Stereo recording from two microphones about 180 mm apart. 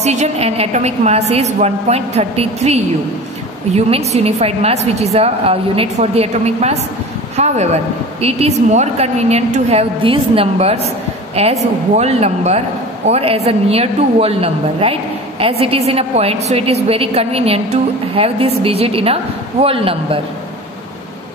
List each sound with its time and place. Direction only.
0.0 s a woman's voice: 40° right (ahead or behind)